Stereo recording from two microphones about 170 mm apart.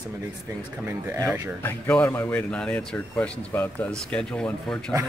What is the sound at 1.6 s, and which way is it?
Speech, 10° left (ahead or behind).